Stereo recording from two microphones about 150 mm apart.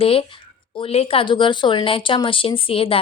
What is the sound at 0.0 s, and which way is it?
Speech, 40° left (ahead or behind).